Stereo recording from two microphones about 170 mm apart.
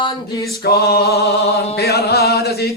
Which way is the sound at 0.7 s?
65° left (ahead or behind).